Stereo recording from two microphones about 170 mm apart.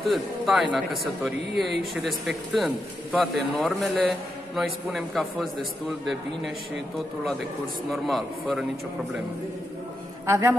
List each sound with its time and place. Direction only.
0.0 s a man's voice: centre (ahead or behind)
7.9 s a man's voice: centre (ahead or behind)
10.2 s a man's voice: 20° right (ahead or behind)